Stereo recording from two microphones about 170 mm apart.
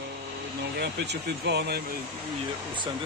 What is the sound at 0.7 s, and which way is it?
Speech, 80° right.